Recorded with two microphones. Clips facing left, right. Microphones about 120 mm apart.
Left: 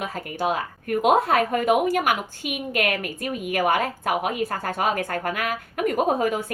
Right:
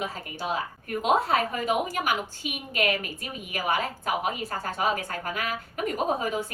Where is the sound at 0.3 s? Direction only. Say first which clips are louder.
Left 6 dB; 55° left (ahead or behind).